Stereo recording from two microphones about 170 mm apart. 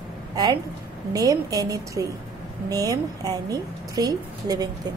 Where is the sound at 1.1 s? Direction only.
20° right (ahead or behind).